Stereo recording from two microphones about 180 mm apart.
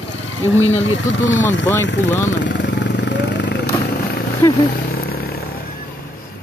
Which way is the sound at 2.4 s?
80° left.